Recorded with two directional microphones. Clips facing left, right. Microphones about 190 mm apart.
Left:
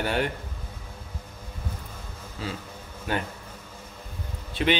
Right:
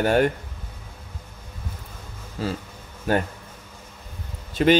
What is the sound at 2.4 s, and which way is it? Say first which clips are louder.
Speech: right 6 dB; 40° right (ahead or behind).